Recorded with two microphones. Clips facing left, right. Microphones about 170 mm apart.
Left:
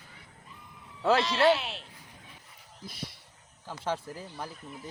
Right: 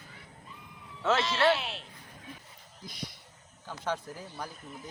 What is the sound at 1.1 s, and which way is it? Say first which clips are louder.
Music: left 3 dB; centre (ahead or behind).